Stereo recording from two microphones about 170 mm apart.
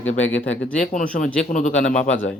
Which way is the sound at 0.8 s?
55° left (ahead or behind).